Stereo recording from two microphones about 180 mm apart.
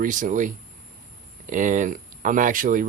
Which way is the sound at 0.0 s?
45° right (ahead or behind).